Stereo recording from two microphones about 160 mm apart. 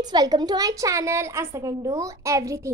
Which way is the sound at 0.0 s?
25° right (ahead or behind).